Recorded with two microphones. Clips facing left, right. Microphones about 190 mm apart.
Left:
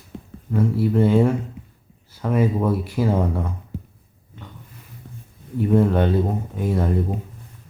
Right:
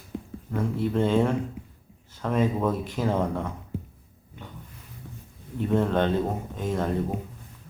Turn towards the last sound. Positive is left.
turn(degrees=10)  # may be behind; listen again after turning